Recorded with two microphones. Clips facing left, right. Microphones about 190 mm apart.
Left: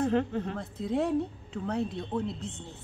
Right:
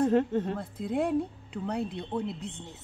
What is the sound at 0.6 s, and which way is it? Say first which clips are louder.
Speech: even; 10° right (ahead or behind).